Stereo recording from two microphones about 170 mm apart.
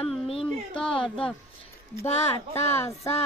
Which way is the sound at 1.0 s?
5° left (ahead or behind).